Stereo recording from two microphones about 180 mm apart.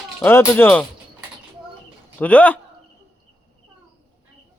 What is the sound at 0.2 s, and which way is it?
Speech, 10° left (ahead or behind).